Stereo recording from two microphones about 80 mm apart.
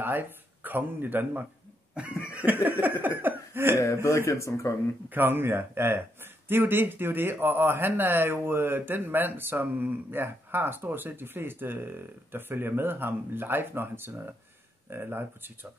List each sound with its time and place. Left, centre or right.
0.0 s speech: right
2.6 s a sound: right
3.8 s speech: left
5.1 s speech: right